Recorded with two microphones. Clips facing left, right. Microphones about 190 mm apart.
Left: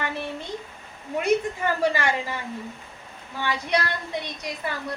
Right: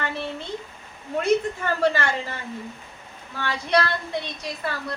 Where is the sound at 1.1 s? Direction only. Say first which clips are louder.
Right 1 dB; 15° left (ahead or behind).